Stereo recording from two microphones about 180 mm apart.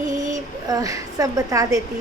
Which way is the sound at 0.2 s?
20° right (ahead or behind).